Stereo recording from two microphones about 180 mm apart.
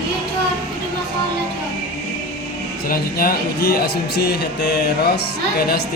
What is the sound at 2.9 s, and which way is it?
A man's voice, 55° left (ahead or behind).